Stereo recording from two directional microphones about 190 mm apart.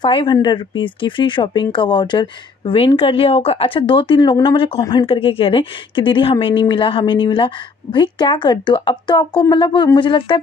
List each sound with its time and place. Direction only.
0.0 s speech: 25° left (ahead or behind)